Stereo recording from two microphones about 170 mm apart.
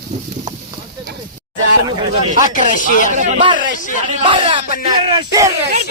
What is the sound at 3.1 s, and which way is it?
Speech, 45° right (ahead or behind).